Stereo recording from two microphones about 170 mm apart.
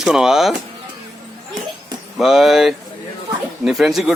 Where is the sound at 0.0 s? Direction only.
5° right (ahead or behind).